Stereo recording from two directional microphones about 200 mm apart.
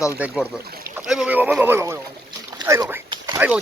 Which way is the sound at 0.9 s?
Centre (ahead or behind).